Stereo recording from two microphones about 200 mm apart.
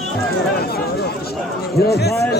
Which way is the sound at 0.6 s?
50° left (ahead or behind).